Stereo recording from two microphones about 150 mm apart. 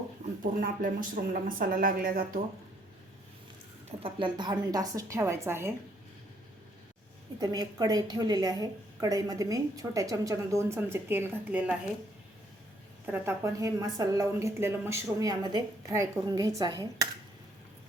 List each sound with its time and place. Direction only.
0.6 s speech: 65° right (ahead or behind)
3.8 s a woman's voice: 35° right (ahead or behind); by 5.7 s 15° right (ahead or behind)
7.3 s a woman's voice: 25° right (ahead or behind)
13.1 s a woman's voice: 15° right (ahead or behind)